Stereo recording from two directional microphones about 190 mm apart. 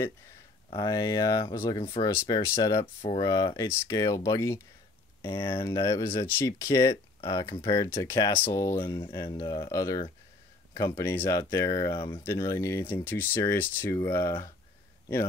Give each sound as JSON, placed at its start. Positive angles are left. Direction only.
{"t": 0.7, "sound": "speech", "side_deg": 25}
{"t": 5.6, "sound": "speech", "side_deg": 15}
{"t": 12.2, "sound": "speech", "side_deg": 15}